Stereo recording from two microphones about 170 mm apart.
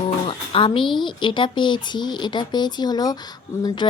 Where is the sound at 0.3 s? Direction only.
30° left (ahead or behind).